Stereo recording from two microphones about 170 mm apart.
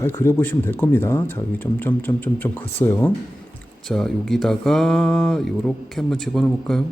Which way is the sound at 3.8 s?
Centre (ahead or behind).